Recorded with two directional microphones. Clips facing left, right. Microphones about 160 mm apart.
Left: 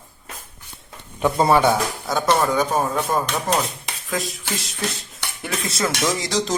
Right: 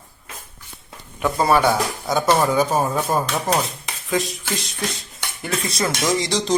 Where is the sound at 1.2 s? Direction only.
20° left (ahead or behind).